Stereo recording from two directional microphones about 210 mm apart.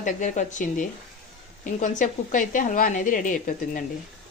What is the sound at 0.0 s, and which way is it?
A woman's voice, 35° left (ahead or behind).